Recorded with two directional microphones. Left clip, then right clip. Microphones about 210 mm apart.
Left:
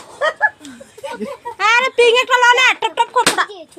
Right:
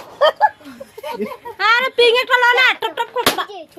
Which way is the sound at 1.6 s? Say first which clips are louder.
Left 1 dB; 10° left (ahead or behind).